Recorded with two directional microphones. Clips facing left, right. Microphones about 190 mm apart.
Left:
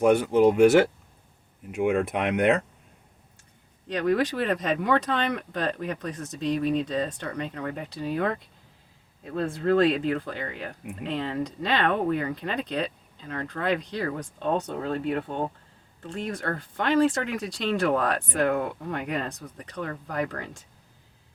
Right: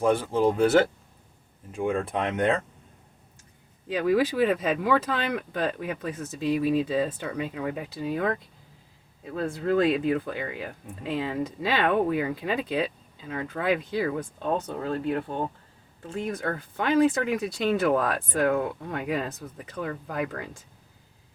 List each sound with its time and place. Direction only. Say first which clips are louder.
0.0 s speech: left 4 dB; 15° left (ahead or behind)
3.8 s speech: right 1 dB; 5° right (ahead or behind)